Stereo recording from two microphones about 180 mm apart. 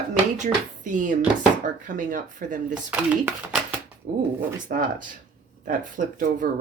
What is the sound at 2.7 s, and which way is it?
Speech, 5° right (ahead or behind).